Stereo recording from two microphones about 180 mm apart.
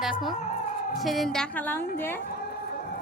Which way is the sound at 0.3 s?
40° left (ahead or behind).